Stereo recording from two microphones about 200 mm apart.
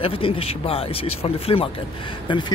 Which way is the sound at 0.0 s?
30° left (ahead or behind).